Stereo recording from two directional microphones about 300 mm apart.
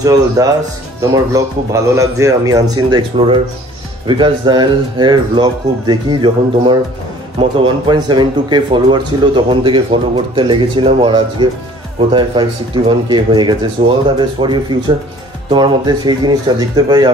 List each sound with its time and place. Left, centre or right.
0.0 s a man's voice: centre